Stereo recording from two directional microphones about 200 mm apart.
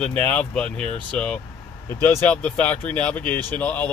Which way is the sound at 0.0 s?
5° left (ahead or behind).